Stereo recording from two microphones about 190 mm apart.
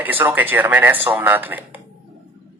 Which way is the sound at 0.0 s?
10° right (ahead or behind).